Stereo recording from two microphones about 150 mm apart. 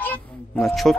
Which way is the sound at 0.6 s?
Centre (ahead or behind).